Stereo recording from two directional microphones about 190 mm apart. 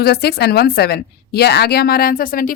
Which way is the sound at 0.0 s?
55° left (ahead or behind).